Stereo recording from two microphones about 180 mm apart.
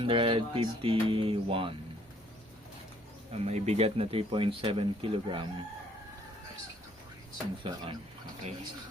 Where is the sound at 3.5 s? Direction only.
35° right (ahead or behind).